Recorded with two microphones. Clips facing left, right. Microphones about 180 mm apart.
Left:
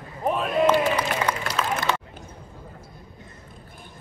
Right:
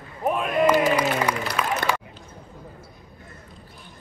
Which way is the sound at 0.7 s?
10° right (ahead or behind).